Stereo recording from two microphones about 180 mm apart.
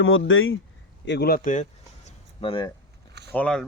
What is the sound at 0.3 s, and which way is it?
Speech, 90° left.